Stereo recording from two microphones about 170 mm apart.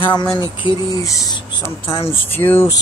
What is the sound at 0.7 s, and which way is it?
Speech, 20° left (ahead or behind).